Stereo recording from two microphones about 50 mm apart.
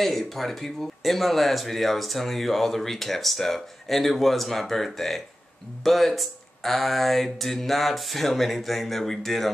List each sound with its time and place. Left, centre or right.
0.0 s speech: centre